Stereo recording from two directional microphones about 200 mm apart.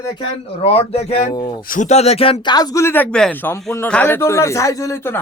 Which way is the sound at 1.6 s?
40° left (ahead or behind).